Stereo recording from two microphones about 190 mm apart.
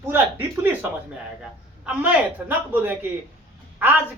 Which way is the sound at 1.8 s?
10° right (ahead or behind).